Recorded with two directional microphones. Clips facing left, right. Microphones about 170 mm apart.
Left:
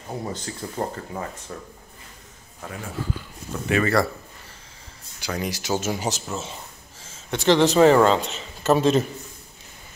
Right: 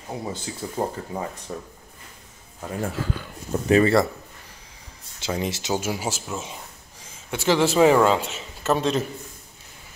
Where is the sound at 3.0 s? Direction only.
90° right.